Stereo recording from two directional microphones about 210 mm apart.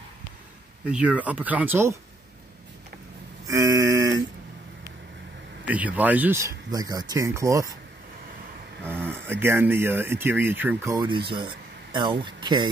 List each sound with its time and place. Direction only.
0.8 s speech: 5° right (ahead or behind)
3.4 s a sound: 15° right (ahead or behind)
5.7 s speech: 5° right (ahead or behind)
8.8 s speech: 10° right (ahead or behind)